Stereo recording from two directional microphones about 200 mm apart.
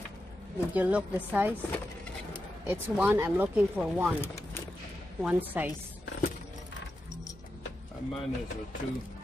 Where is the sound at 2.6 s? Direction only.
10° right (ahead or behind).